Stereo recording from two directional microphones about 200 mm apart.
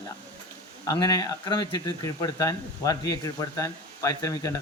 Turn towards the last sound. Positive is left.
turn(degrees=15)  # may be behind; listen again after turning